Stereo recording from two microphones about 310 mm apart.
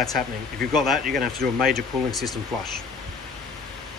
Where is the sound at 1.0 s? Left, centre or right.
Right.